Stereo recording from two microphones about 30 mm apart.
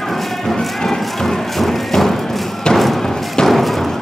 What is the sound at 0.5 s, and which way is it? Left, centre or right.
Thump, centre.